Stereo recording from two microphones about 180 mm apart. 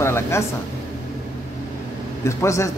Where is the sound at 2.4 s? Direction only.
15° left (ahead or behind).